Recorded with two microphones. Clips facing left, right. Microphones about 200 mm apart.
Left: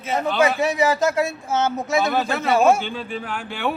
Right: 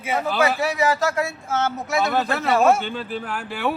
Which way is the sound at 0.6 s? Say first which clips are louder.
Left 2 dB; 20° left (ahead or behind).